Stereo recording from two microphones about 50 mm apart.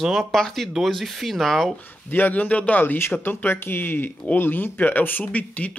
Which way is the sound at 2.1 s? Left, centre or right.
Left.